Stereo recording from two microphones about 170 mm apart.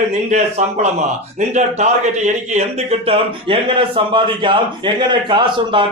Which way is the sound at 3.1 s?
30° right (ahead or behind).